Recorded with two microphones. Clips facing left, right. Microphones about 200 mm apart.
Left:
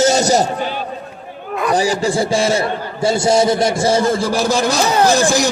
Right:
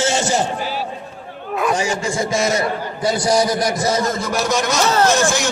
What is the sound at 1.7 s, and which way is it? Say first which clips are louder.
A man's voice: left 5 dB; 35° left (ahead or behind).